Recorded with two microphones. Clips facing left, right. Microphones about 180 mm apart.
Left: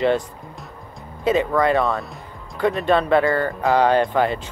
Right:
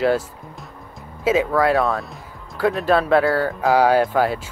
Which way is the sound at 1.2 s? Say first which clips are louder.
Right 1 dB; 5° right (ahead or behind).